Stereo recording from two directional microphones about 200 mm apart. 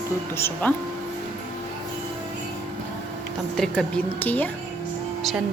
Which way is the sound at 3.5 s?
5° left (ahead or behind).